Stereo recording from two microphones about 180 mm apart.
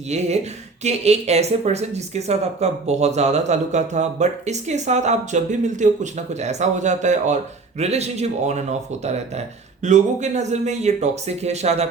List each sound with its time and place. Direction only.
0.1 s speech: 40° right (ahead or behind)